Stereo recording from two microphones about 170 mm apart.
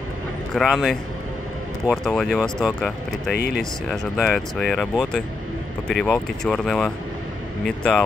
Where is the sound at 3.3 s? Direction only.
65° left (ahead or behind).